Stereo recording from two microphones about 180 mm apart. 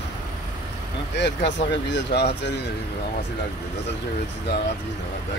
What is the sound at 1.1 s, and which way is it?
Speech, 75° left (ahead or behind).